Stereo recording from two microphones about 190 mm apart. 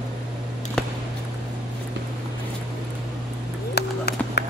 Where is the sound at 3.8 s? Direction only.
60° left (ahead or behind).